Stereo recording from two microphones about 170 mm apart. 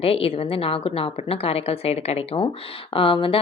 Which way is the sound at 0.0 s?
35° left (ahead or behind).